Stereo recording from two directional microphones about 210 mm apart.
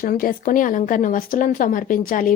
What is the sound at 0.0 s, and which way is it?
Speech, 40° left (ahead or behind).